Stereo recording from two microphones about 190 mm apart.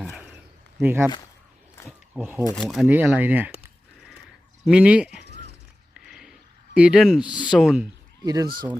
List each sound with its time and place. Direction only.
0.0 s a sound: 5° right (ahead or behind)
0.8 s speech: 10° right (ahead or behind)
2.1 s speech: 10° right (ahead or behind)
4.6 s speech: 5° right (ahead or behind)
5.9 s ratchet: centre (ahead or behind)
6.7 s speech: 5° right (ahead or behind)
8.2 s speech: 20° right (ahead or behind)